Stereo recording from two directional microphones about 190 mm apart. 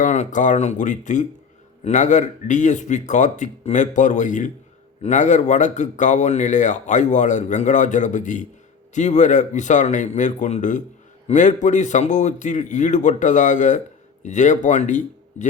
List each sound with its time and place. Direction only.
0.0 s a man's voice: 40° left (ahead or behind)